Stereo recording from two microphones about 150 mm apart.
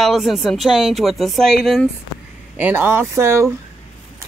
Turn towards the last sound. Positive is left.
turn(degrees=-20)  # may be behind; listen again after turning